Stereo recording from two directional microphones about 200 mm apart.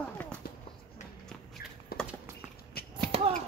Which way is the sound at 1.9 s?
50° left (ahead or behind).